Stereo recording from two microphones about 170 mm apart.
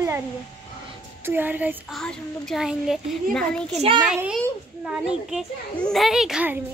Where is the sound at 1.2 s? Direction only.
10° right (ahead or behind).